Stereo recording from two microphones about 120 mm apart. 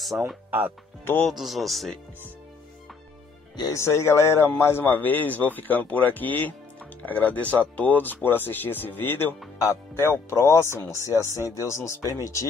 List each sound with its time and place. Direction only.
0.1 s speech: 10° right (ahead or behind)
3.5 s speech: 30° left (ahead or behind)